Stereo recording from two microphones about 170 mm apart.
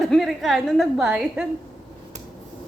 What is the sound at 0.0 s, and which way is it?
A woman's voice, centre (ahead or behind).